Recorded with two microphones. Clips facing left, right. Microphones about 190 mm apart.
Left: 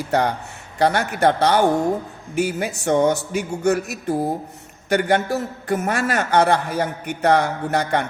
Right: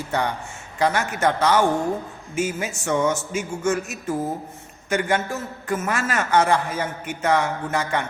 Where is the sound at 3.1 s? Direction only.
60° left (ahead or behind).